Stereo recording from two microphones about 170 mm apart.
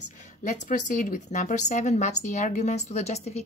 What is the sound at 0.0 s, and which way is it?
Speech, 45° left (ahead or behind).